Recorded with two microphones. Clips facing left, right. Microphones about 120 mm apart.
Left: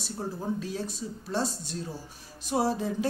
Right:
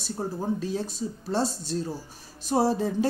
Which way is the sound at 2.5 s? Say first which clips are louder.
Right 4 dB; 35° right (ahead or behind).